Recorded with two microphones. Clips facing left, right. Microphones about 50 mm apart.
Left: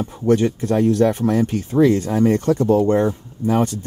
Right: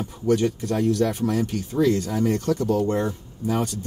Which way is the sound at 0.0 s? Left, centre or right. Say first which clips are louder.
Left 4 dB; left.